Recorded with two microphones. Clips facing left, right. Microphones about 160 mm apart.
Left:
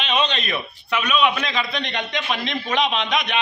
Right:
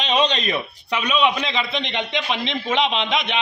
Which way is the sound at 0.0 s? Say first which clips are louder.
Right 3 dB; 35° right (ahead or behind).